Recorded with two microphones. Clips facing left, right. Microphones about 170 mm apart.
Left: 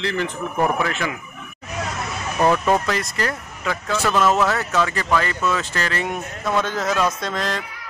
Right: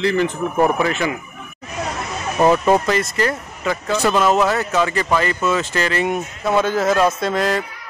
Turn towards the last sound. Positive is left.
turn(degrees=-5)  # may be behind; listen again after turning